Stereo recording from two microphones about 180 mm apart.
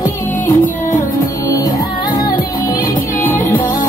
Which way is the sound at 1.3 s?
20° left (ahead or behind).